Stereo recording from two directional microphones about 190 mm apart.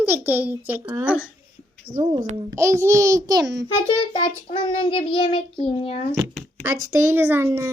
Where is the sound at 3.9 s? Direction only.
25° left (ahead or behind).